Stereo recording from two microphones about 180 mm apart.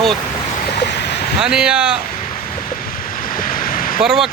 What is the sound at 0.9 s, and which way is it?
Vehicle, 70° left (ahead or behind).